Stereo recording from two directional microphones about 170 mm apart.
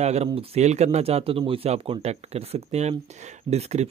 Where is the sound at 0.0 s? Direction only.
40° right (ahead or behind).